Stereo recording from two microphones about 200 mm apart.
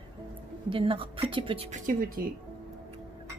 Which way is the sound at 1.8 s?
45° right (ahead or behind).